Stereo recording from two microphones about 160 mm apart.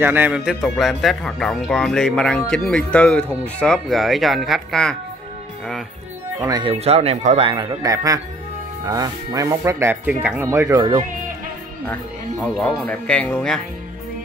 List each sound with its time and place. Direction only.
0.0 s speech: 10° right (ahead or behind)
6.4 s speech: 25° right (ahead or behind)
6.7 s speech: 40° right (ahead or behind)
12.5 s speech: 5° left (ahead or behind)